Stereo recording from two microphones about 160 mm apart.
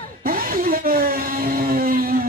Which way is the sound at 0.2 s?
65° right (ahead or behind).